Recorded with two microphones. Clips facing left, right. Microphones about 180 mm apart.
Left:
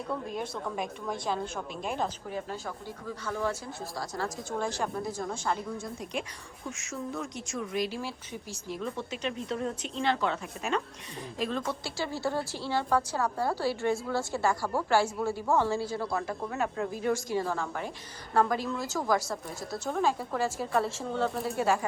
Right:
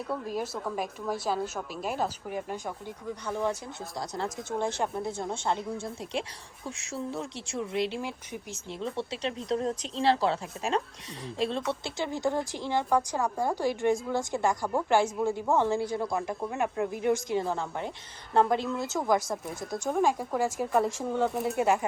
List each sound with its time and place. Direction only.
0.1 s a woman's voice: 5° right (ahead or behind); by 21.8 s 20° right (ahead or behind)